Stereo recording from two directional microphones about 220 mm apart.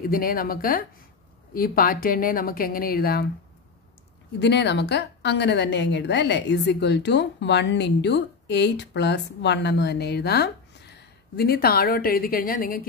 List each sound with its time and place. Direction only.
0.0 s a woman's voice: 40° left (ahead or behind)
4.4 s a woman's voice: 50° left (ahead or behind)